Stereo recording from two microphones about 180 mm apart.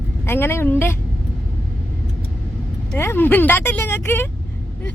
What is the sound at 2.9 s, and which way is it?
Speech, 10° left (ahead or behind).